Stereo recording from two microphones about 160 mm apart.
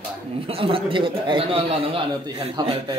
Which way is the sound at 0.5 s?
35° right (ahead or behind).